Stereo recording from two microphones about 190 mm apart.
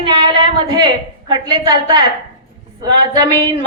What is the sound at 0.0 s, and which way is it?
A woman's voice, 25° right (ahead or behind).